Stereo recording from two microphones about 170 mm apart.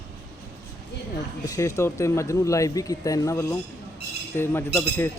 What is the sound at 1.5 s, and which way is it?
Speech, 20° left (ahead or behind).